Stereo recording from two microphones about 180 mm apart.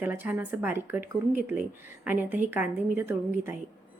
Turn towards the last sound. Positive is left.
turn(degrees=-10)  # may be behind; listen again after turning